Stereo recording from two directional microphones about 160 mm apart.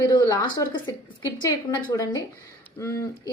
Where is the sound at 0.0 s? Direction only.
25° left (ahead or behind).